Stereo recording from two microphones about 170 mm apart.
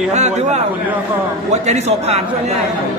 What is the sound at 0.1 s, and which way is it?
A man's voice, 40° right (ahead or behind).